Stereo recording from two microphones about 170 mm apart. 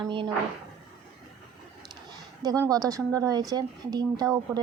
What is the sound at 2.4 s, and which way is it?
Speech, 20° right (ahead or behind).